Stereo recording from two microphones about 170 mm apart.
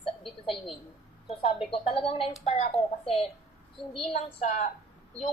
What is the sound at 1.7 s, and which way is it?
Speech, 30° left (ahead or behind).